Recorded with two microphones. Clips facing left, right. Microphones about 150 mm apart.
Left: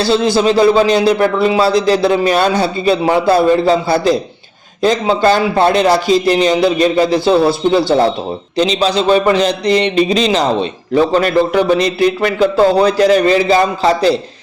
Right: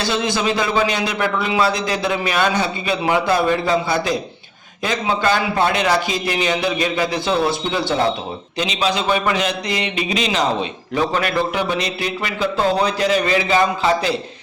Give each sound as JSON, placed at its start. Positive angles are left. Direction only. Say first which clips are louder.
{"t": 0.0, "sound": "a man's voice", "louder": "left 8 dB", "side_deg": 35}